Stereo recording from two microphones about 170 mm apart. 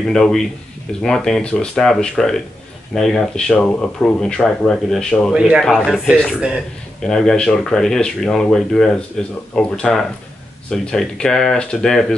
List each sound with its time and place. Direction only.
0.0 s a man's voice: centre (ahead or behind)